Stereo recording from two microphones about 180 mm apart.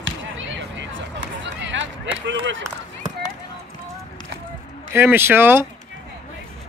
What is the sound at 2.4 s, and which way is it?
Speech, 90° right.